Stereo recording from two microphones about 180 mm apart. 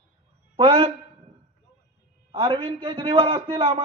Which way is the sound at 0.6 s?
30° right (ahead or behind).